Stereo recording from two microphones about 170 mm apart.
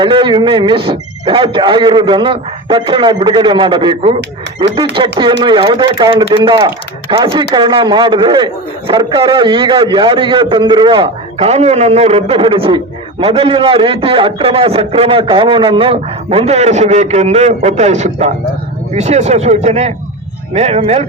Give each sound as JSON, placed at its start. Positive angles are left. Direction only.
{"t": 0.0, "sound": "a man's voice", "side_deg": -30}